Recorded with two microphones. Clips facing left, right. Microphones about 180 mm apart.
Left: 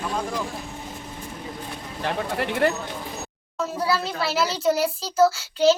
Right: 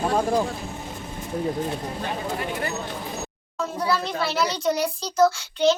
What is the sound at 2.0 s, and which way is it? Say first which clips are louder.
Speech: left 6 dB; 75° left (ahead or behind).